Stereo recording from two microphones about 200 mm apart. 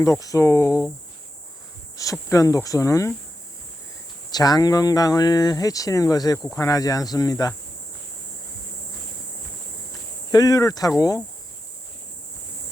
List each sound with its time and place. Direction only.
0.0 s speech: 15° left (ahead or behind)
2.0 s speech: 15° left (ahead or behind)
4.3 s speech: 20° left (ahead or behind)
10.3 s speech: 20° left (ahead or behind)